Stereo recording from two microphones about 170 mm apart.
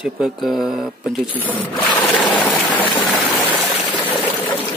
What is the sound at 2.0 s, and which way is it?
Stream, 10° left (ahead or behind).